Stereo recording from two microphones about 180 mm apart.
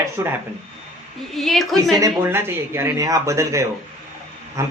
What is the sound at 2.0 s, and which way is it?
Speech, 15° right (ahead or behind).